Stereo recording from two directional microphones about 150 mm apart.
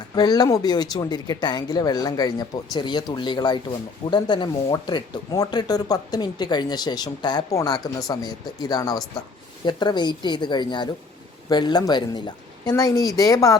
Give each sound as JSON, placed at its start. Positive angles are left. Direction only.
{"t": 0.2, "sound": "speech", "side_deg": 25}